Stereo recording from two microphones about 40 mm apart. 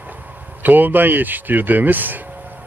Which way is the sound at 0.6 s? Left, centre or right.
Right.